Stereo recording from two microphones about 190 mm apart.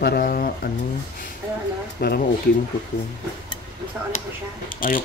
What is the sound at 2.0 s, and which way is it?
Speech, 55° left (ahead or behind).